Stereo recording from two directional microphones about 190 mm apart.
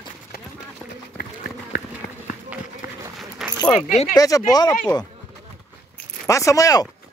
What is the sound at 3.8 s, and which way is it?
Speech, 35° left (ahead or behind).